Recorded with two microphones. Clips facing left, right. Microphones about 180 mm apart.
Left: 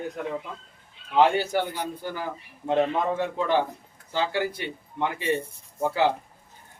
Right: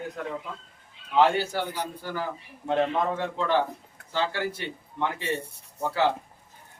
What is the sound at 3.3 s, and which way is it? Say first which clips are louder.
A man's voice: left 1 dB; 15° left (ahead or behind).